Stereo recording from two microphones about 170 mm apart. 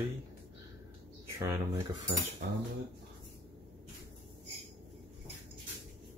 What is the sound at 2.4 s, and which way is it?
Cutlery, 65° right (ahead or behind).